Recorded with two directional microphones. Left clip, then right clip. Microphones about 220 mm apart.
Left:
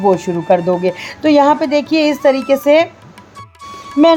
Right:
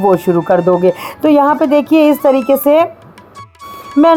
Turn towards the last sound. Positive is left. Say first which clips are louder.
# right 1 dB
turn(degrees=-15)  # may be behind; listen again after turning